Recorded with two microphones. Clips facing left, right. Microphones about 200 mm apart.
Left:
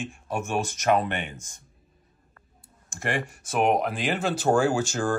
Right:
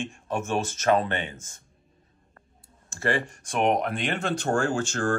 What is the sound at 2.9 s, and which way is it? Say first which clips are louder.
Speech: right 3 dB; 15° left (ahead or behind).